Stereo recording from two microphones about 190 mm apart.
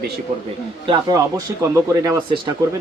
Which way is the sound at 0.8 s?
20° right (ahead or behind).